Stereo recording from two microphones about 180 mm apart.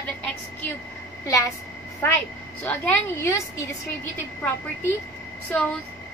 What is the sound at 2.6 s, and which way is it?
Speech, 10° left (ahead or behind).